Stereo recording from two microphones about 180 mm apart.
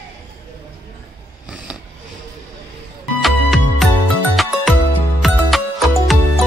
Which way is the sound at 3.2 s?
Centre (ahead or behind).